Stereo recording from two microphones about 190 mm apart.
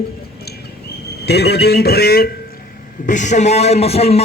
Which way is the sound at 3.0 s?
40° left (ahead or behind).